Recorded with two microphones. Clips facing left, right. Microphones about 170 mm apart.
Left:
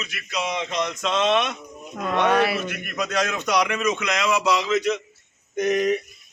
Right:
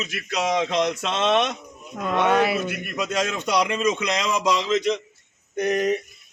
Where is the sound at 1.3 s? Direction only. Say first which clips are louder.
Right 1 dB; 40° right (ahead or behind).